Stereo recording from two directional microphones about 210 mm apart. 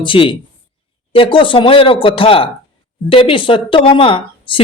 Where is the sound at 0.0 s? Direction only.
25° left (ahead or behind).